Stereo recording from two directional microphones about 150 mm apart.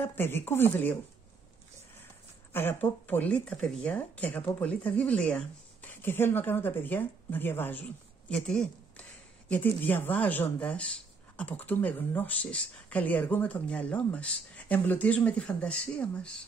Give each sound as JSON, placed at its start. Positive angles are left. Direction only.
{"t": 0.0, "sound": "speech", "side_deg": 15}
{"t": 2.5, "sound": "speech", "side_deg": 15}